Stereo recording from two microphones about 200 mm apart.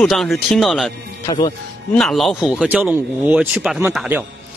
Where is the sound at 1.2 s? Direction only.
20° left (ahead or behind).